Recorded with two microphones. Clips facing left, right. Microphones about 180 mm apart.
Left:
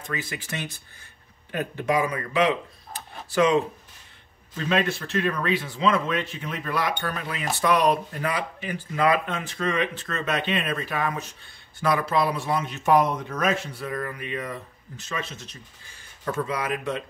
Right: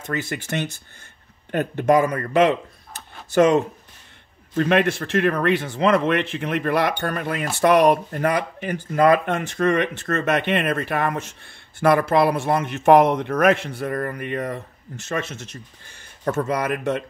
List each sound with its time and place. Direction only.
1.5 s speech: 50° right (ahead or behind)
4.6 s speech: 60° right (ahead or behind)
10.4 s speech: 60° right (ahead or behind)
15.2 s speech: 80° right
16.3 s speech: 45° right (ahead or behind)